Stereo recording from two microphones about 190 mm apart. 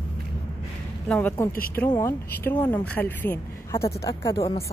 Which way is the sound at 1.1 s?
10° left (ahead or behind).